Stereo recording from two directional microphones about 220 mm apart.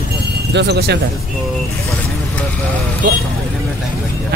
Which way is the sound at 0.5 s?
50° right (ahead or behind).